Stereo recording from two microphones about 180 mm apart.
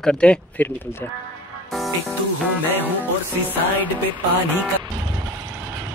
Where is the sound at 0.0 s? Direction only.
5° left (ahead or behind).